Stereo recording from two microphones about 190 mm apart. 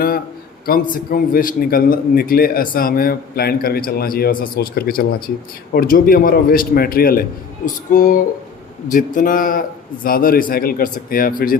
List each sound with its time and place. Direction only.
0.9 s a man's voice: 45° left (ahead or behind)